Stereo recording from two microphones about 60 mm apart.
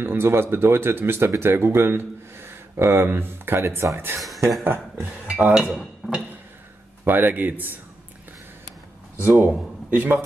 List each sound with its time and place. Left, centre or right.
0.0 s speech: right
5.4 s speech: centre
5.7 s music: centre
7.1 s speech: right
9.1 s speech: right